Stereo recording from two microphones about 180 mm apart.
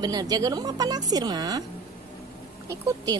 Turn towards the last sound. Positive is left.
turn(degrees=-20)  # may be behind; listen again after turning